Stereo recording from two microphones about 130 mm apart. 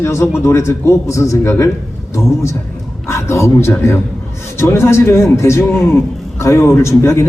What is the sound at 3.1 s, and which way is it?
A woman's voice, 20° left (ahead or behind).